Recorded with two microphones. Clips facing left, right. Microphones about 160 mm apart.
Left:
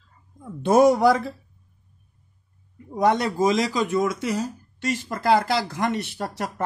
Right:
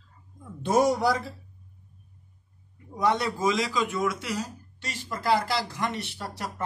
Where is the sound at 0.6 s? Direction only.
60° left (ahead or behind).